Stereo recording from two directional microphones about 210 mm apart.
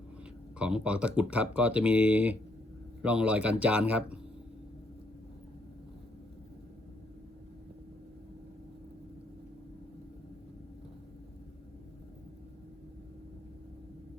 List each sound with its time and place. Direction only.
0.6 s a man's voice: 5° right (ahead or behind)